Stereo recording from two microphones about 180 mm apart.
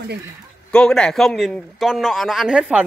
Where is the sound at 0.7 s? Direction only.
5° left (ahead or behind).